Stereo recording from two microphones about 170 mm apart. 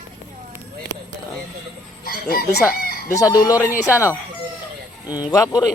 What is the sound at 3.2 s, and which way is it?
Speech, 20° left (ahead or behind).